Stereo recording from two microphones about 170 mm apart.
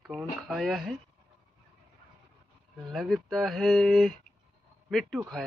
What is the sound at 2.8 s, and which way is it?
Speech, centre (ahead or behind).